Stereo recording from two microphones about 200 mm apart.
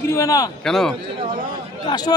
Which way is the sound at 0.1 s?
15° left (ahead or behind).